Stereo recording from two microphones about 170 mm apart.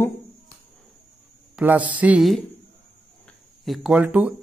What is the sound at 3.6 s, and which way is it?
Speech, 5° right (ahead or behind).